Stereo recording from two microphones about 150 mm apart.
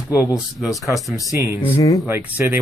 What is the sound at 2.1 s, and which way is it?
Speech, 15° right (ahead or behind).